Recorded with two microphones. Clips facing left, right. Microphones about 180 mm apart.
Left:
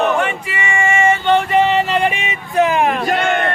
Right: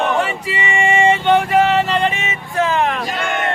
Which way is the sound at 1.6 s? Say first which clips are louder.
Even; centre (ahead or behind).